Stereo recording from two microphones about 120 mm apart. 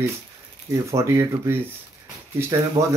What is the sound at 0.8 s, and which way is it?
Speech, 25° right (ahead or behind).